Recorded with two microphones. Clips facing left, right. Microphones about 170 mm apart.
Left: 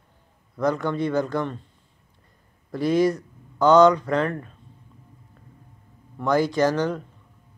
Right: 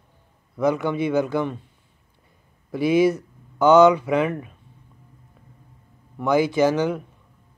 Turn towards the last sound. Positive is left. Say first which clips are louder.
# right 2 dB
turn(degrees=-5)  # may be behind; listen again after turning